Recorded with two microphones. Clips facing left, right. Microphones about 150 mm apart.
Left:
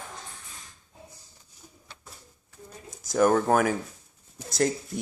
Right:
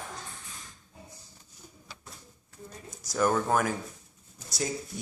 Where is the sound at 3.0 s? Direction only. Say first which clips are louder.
Left 5 dB; 50° left (ahead or behind).